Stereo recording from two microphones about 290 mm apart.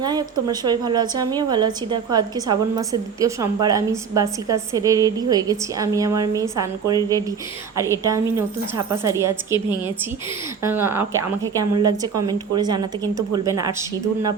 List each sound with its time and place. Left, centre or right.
0.0 s a woman's voice: centre
10.6 s a woman's voice: centre